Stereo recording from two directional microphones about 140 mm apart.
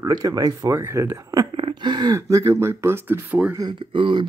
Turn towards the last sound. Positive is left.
turn(degrees=-35)  # may be behind; listen again after turning